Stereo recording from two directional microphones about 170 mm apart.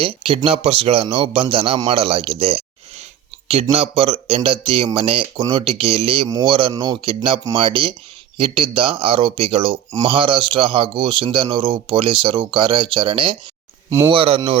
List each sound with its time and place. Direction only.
0.0 s a man's voice: 30° right (ahead or behind)